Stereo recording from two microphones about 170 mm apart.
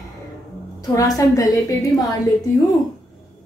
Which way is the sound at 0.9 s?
20° left (ahead or behind).